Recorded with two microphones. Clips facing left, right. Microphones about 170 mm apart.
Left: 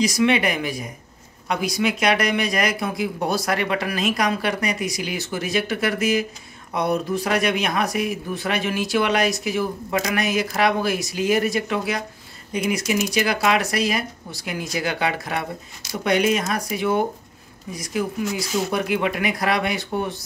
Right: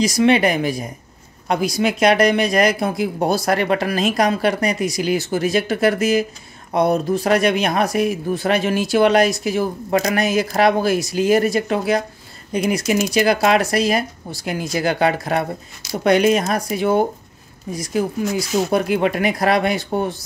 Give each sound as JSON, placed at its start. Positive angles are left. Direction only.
{"t": 0.2, "sound": "speech", "side_deg": -35}